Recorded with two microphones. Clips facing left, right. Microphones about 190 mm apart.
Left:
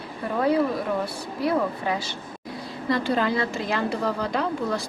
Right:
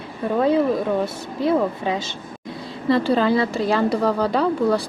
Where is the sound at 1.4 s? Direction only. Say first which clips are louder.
Right 4 dB; 20° right (ahead or behind).